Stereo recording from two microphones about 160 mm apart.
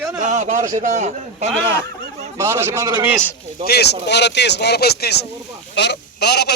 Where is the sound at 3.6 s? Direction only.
80° left.